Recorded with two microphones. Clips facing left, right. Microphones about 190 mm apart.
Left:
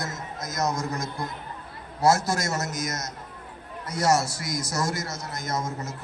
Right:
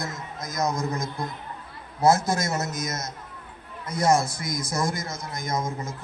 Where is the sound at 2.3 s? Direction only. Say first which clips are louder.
Right 1 dB; 20° right (ahead or behind).